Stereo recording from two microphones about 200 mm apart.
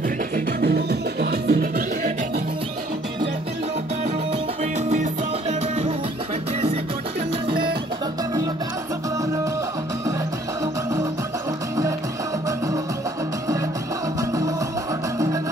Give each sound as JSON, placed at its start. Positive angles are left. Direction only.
{"t": 0.6, "sound": "music", "side_deg": -50}
{"t": 5.5, "sound": "music", "side_deg": -30}
{"t": 10.6, "sound": "music", "side_deg": -15}